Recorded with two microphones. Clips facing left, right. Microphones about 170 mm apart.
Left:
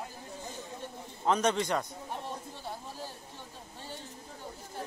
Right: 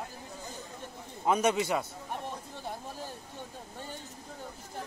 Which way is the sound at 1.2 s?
10° right (ahead or behind).